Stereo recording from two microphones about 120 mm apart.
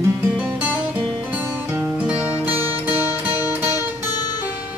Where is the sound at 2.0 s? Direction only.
10° right (ahead or behind).